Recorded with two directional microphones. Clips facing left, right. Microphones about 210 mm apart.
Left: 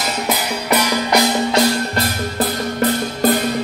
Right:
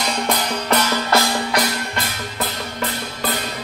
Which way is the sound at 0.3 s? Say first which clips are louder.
Left 2 dB; 10° left (ahead or behind).